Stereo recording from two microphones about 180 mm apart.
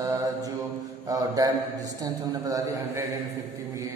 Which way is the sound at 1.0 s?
20° right (ahead or behind).